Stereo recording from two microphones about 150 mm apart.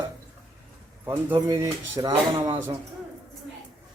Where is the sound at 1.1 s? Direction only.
15° right (ahead or behind).